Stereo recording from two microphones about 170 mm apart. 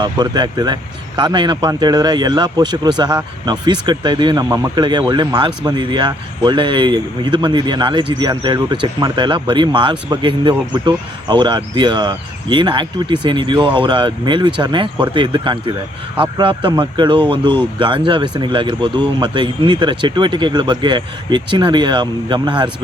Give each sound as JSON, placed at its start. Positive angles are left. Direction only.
{"t": 0.0, "sound": "speech", "side_deg": -25}